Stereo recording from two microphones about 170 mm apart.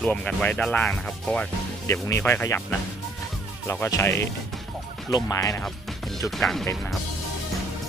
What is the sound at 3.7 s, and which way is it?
Speech, 15° left (ahead or behind).